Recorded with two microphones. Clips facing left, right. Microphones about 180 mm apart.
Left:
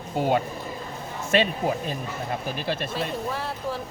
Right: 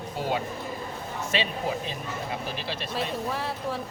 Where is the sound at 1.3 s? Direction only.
50° left (ahead or behind).